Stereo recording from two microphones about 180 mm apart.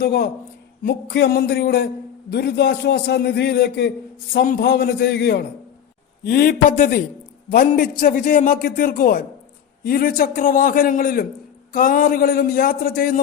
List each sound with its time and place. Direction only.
0.0 s a man's voice: 60° left (ahead or behind)